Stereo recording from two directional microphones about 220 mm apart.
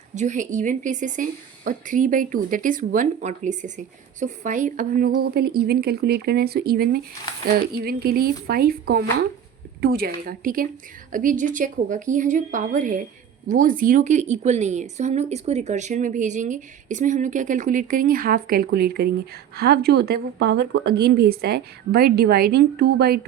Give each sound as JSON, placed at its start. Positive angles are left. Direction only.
{"t": 0.2, "sound": "a woman's voice", "side_deg": -35}